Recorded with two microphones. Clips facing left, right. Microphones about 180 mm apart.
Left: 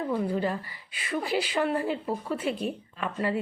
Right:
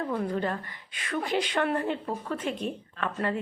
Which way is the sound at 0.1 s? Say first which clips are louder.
Left 1 dB; 10° left (ahead or behind).